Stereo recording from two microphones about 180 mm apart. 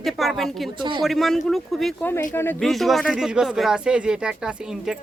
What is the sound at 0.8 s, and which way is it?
Speech, 25° right (ahead or behind).